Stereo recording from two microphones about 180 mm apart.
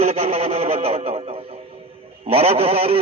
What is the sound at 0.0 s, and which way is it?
A man's voice, 35° right (ahead or behind).